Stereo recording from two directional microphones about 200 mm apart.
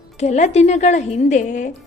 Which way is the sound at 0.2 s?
35° left (ahead or behind).